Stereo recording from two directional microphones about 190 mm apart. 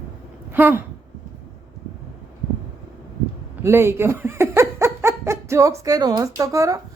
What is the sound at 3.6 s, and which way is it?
A woman's voice, 10° right (ahead or behind).